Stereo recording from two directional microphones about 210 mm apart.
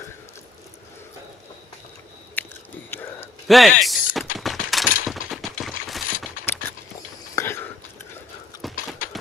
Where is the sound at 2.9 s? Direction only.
10° left (ahead or behind).